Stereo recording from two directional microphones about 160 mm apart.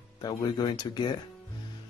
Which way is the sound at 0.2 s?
25° left (ahead or behind).